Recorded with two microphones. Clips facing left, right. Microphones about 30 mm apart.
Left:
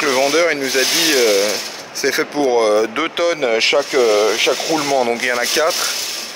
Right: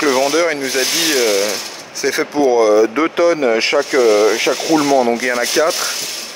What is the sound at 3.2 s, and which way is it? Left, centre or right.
Speech, left.